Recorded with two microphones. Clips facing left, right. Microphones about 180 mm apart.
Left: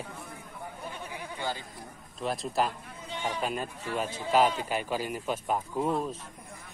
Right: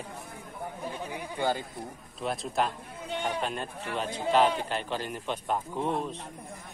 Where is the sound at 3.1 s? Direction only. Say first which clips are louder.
Right 2 dB; 60° right (ahead or behind).